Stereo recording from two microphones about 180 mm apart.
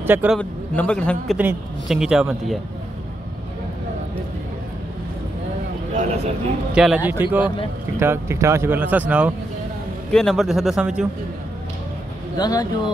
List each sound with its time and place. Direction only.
0.0 s a man's voice: 10° right (ahead or behind)
0.4 s a man's voice: 5° left (ahead or behind)
6.7 s a man's voice: 5° right (ahead or behind)
12.4 s speech: 20° left (ahead or behind)